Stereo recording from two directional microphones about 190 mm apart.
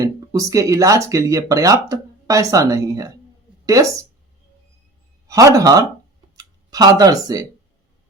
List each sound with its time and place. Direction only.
0.0 s speech: 20° right (ahead or behind)
5.3 s speech: 15° right (ahead or behind)
6.3 s a sound: 20° right (ahead or behind)